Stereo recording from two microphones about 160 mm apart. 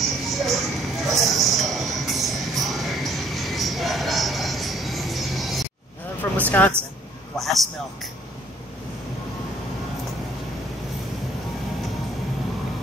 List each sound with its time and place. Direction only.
0.0 s music: centre (ahead or behind)
6.2 s a sound: 10° left (ahead or behind)
6.6 s a man's voice: 10° left (ahead or behind)